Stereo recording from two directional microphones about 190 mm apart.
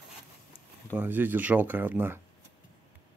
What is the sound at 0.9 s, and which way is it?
Speech, 10° right (ahead or behind).